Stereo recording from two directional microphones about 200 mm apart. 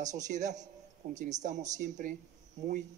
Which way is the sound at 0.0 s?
35° right (ahead or behind).